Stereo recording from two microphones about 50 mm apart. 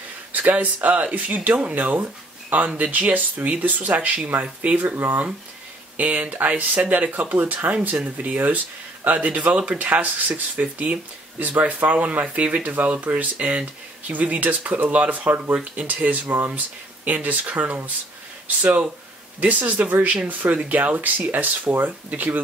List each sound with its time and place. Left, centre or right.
0.3 s speech: right
15.5 s speech: right